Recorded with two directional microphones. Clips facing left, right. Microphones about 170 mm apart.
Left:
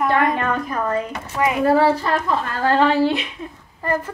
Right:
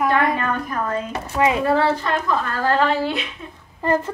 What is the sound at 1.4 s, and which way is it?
Speech, 20° right (ahead or behind).